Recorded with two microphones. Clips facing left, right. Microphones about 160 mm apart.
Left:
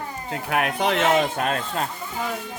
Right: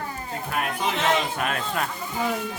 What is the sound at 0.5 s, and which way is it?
Speech, 65° left (ahead or behind).